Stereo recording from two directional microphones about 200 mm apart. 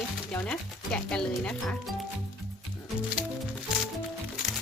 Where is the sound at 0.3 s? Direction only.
5° left (ahead or behind).